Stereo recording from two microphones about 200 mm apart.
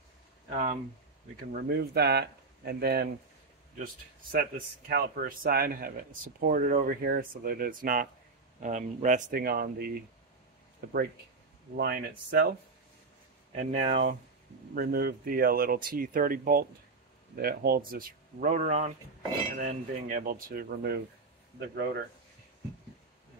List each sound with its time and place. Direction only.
0.5 s speech: 30° right (ahead or behind)
1.3 s speech: 50° right (ahead or behind)
11.7 s speech: 50° right (ahead or behind)
13.6 s speech: 35° right (ahead or behind)
14.8 s speech: 50° right (ahead or behind)